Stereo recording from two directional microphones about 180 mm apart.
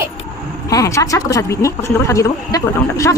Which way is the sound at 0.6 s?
15° left (ahead or behind).